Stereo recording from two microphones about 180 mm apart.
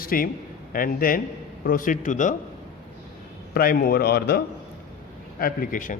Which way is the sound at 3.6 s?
55° left (ahead or behind).